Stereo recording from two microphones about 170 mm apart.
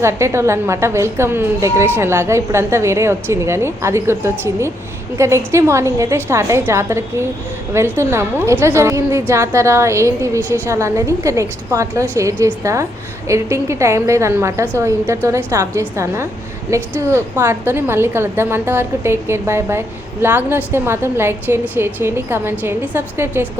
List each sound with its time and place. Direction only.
0.0 s a woman's voice: 15° right (ahead or behind)